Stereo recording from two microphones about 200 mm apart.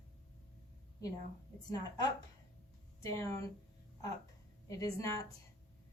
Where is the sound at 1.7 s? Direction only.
20° left (ahead or behind).